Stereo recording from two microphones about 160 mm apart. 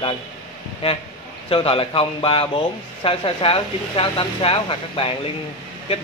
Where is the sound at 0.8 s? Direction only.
35° left (ahead or behind).